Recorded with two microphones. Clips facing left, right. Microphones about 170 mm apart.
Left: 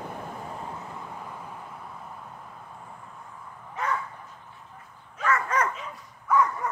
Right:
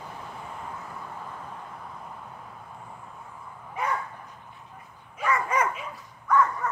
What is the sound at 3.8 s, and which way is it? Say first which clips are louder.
Dog: right 1 dB; 10° right (ahead or behind).